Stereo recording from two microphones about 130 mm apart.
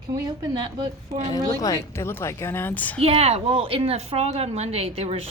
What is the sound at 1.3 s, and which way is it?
A woman's voice, 25° left (ahead or behind).